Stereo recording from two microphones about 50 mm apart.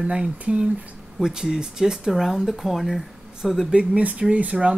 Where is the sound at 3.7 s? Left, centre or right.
Right.